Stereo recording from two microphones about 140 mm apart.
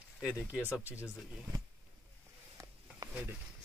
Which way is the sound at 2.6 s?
25° right (ahead or behind).